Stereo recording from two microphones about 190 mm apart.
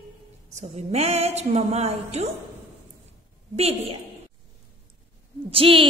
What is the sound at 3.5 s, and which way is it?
Speech, 30° right (ahead or behind).